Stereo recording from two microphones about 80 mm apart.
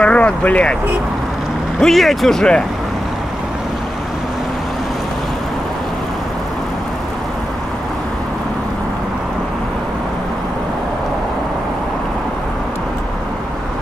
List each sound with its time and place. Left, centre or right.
0.0 s speech: centre
1.8 s speech: centre